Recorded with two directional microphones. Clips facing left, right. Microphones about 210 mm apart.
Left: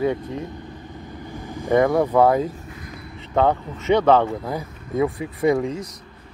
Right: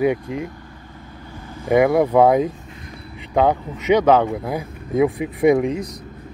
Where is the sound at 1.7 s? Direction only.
10° right (ahead or behind).